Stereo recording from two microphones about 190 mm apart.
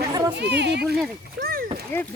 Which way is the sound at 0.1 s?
20° right (ahead or behind).